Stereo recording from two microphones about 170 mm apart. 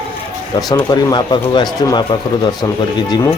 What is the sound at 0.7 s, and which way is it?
Speech, 25° left (ahead or behind).